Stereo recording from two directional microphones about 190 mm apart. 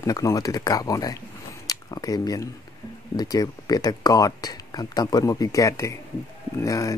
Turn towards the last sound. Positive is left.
turn(degrees=15)  # may be behind; listen again after turning